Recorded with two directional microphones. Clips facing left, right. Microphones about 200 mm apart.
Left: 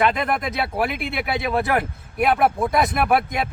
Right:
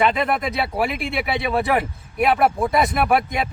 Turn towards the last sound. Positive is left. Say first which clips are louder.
# right 1 dB
turn(degrees=0)  # may be behind; listen again after turning